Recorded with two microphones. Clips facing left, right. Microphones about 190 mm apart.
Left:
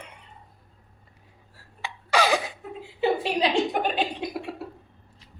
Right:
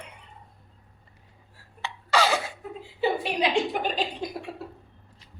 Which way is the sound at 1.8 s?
15° left (ahead or behind).